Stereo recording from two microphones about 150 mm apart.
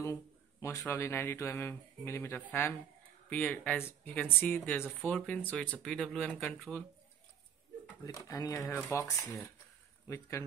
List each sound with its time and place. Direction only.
0.0 s speech: 20° left (ahead or behind)
4.8 s speech: centre (ahead or behind)
5.2 s speech: 10° left (ahead or behind)
8.0 s speech: 20° left (ahead or behind)